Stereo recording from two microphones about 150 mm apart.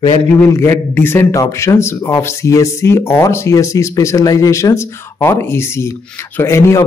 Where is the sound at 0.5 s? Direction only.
15° left (ahead or behind).